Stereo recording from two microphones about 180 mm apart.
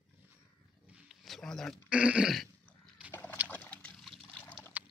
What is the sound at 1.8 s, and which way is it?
Dog, 5° right (ahead or behind).